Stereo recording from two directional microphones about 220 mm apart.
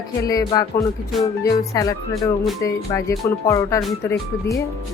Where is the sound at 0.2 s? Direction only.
15° left (ahead or behind).